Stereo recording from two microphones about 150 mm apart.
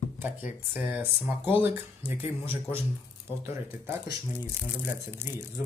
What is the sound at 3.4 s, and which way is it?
Speech, 15° right (ahead or behind).